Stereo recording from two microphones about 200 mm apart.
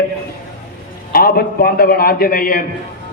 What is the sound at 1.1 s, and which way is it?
A man's voice, 50° left (ahead or behind).